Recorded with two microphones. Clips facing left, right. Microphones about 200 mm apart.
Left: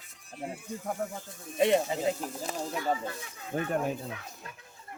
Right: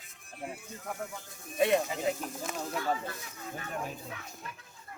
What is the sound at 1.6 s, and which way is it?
Speech, 25° left (ahead or behind).